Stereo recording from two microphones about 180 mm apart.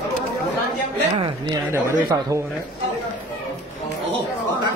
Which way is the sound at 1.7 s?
15° right (ahead or behind).